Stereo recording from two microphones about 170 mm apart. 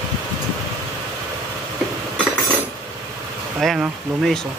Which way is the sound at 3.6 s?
Centre (ahead or behind).